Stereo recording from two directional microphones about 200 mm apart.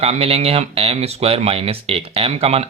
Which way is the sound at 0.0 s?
30° right (ahead or behind).